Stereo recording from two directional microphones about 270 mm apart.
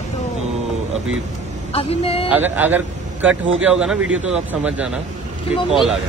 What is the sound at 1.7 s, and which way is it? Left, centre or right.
Speech, left.